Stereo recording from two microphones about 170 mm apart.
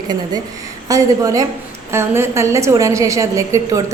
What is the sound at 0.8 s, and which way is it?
A woman's voice, 20° right (ahead or behind).